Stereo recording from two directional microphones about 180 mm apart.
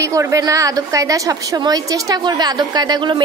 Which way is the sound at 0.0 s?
15° right (ahead or behind).